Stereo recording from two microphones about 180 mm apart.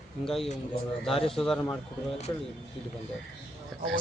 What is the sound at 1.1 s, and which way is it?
Speech, 30° left (ahead or behind).